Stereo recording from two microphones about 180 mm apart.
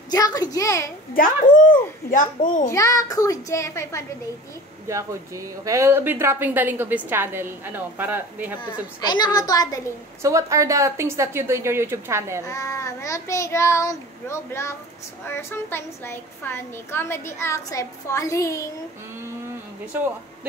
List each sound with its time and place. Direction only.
0.1 s a child's voice: 20° left (ahead or behind)
1.1 s a child's voice: 50° left (ahead or behind)
2.7 s a woman's voice: 15° left (ahead or behind)
4.8 s speech: 15° right (ahead or behind)
9.0 s a child's voice: 25° left (ahead or behind)
10.2 s speech: 15° right (ahead or behind)
12.4 s a woman's voice: 15° left (ahead or behind)